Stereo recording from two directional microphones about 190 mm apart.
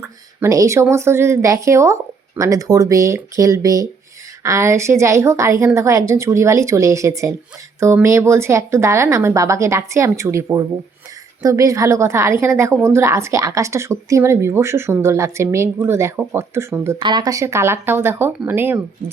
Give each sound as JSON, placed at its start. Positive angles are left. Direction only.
{"t": 0.3, "sound": "a woman's voice", "side_deg": -15}